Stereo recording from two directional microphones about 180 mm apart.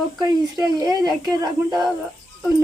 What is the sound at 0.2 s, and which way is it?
Speech, 20° right (ahead or behind).